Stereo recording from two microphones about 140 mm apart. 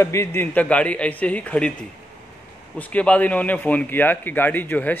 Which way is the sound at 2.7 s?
10° left (ahead or behind).